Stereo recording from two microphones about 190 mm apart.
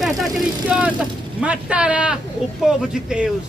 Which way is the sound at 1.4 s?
5° right (ahead or behind).